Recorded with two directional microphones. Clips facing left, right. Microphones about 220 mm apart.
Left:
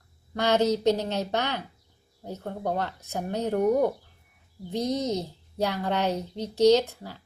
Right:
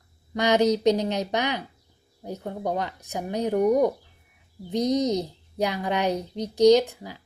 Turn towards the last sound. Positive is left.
turn(degrees=-15)  # may be behind; listen again after turning